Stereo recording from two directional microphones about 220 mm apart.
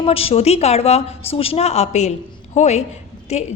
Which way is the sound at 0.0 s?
25° left (ahead or behind).